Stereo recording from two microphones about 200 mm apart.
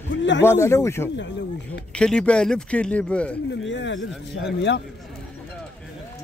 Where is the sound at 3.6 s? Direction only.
65° left (ahead or behind).